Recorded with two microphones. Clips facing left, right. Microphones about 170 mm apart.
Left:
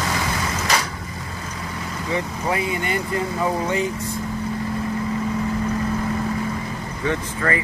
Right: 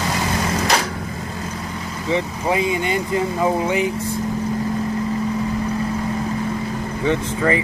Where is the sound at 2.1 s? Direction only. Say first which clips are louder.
Right 4 dB; 20° right (ahead or behind).